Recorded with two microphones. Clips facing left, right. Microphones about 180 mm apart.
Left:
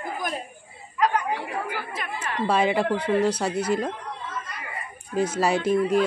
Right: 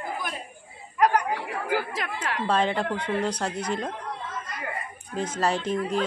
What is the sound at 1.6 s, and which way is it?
Speech, 90° right.